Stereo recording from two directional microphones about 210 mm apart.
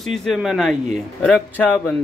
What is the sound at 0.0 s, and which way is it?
A man's voice, centre (ahead or behind).